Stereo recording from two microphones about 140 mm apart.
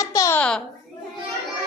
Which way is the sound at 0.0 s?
25° left (ahead or behind).